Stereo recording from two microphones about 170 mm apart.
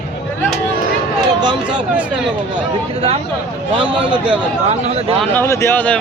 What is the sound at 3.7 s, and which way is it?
Speech, 30° right (ahead or behind).